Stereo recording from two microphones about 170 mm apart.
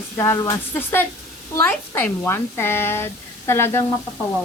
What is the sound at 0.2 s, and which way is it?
Speech, 15° left (ahead or behind).